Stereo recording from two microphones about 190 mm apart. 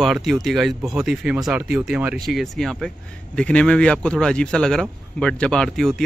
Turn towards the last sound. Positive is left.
turn(degrees=0)  # may be behind; listen again after turning